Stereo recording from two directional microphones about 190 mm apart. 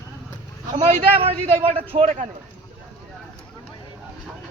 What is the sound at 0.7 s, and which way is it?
A man's voice, 30° right (ahead or behind).